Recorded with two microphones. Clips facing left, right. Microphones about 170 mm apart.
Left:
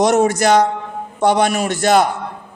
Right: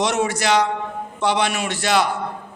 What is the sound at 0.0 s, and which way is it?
Speech, 45° left (ahead or behind).